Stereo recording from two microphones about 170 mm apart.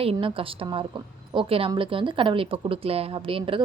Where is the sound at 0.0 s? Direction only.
30° right (ahead or behind).